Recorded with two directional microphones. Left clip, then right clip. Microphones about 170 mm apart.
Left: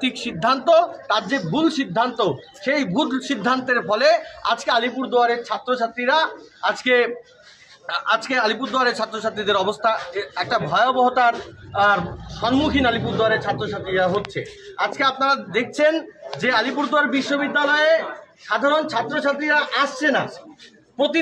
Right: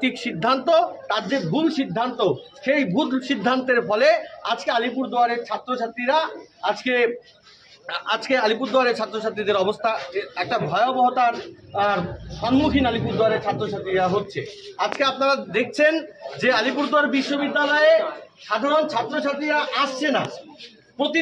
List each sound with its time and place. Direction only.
0.0 s a man's voice: 15° left (ahead or behind)